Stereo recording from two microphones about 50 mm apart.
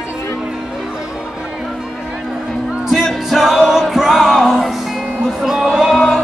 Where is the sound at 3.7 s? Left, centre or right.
Centre.